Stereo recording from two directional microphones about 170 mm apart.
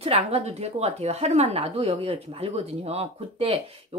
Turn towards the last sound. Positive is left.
turn(degrees=-35)  # may be behind; listen again after turning